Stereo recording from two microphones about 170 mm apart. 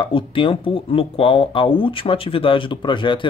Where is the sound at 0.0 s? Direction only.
30° left (ahead or behind).